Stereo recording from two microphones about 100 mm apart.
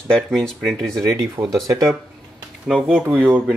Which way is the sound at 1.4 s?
50° right (ahead or behind).